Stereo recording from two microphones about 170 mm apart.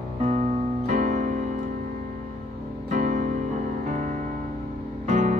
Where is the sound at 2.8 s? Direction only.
45° right (ahead or behind).